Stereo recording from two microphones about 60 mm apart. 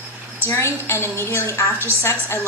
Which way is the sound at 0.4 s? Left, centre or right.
Left.